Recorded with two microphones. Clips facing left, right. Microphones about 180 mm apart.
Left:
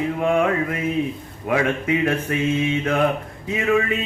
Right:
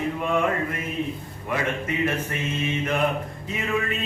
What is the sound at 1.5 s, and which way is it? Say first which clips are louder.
Speech: left 6 dB; 80° left.